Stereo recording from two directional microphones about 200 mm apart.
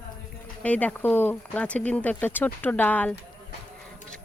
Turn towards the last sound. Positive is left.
turn(degrees=10)  # may be behind; listen again after turning